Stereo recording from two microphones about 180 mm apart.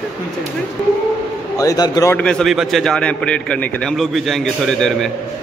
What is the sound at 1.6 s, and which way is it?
Speech, 20° left (ahead or behind).